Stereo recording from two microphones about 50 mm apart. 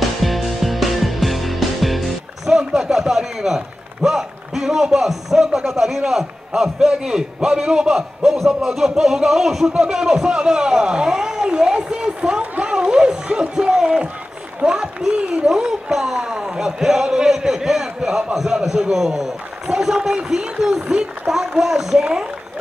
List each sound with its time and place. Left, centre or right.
0.2 s music: centre
8.2 s a man's voice: centre
8.5 s speech: centre